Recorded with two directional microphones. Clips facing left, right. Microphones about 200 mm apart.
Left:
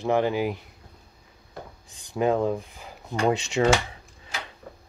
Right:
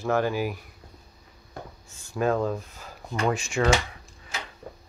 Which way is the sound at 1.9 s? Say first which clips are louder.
Left 2 dB; 15° left (ahead or behind).